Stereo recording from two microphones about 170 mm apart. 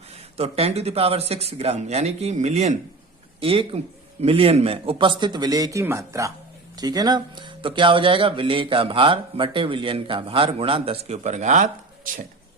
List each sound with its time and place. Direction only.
0.1 s speech: 35° right (ahead or behind)